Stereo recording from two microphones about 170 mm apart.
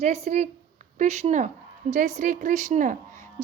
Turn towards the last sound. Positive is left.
turn(degrees=-50)  # may be behind; listen again after turning